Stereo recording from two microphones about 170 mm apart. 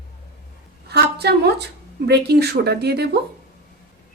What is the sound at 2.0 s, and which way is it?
A woman's voice, 75° right (ahead or behind).